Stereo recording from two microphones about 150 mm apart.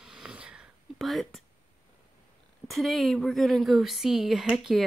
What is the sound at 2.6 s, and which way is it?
Speech, centre (ahead or behind).